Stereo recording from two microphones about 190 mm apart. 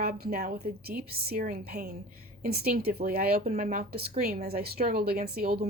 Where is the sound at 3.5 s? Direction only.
40° right (ahead or behind).